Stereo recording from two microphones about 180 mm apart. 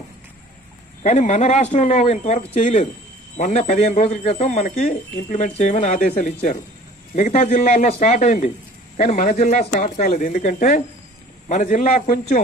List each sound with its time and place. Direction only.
1.0 s speech: 40° left (ahead or behind)